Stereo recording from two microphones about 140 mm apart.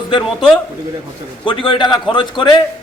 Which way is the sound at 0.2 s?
Centre (ahead or behind).